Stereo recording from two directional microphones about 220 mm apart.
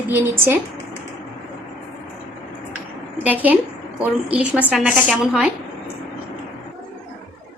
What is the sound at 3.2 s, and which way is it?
A woman's voice, 5° right (ahead or behind).